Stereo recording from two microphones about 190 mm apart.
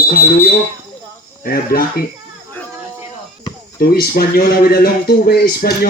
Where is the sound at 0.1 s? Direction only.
50° left (ahead or behind).